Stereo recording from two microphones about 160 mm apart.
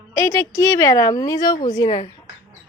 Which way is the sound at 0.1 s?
20° left (ahead or behind).